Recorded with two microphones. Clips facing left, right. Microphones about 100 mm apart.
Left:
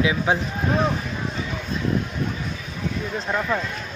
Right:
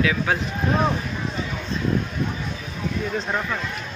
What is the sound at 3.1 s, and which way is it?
Speech, centre (ahead or behind).